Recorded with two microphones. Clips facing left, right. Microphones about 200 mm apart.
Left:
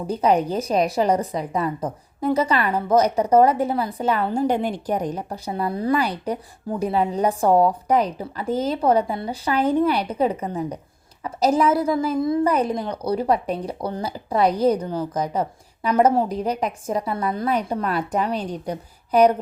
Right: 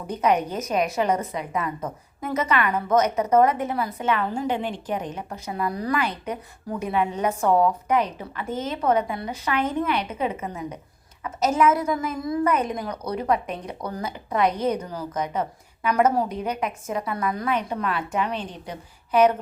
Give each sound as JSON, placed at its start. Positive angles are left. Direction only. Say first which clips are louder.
{"t": 0.1, "sound": "a woman's voice", "louder": "left 3 dB", "side_deg": 30}